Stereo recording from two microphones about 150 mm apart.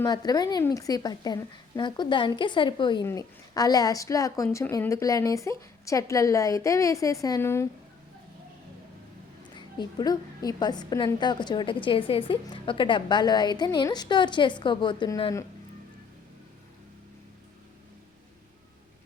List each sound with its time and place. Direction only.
0.0 s a woman's voice: 25° left (ahead or behind)
9.6 s a woman's voice: 30° left (ahead or behind)